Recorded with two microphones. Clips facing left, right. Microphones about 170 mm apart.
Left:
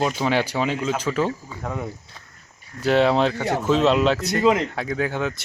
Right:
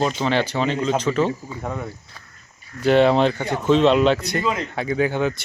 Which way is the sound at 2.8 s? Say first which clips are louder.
Right 3 dB; centre (ahead or behind).